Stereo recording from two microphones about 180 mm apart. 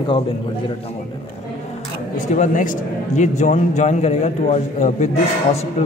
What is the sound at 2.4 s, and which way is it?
A man's voice, 45° left (ahead or behind).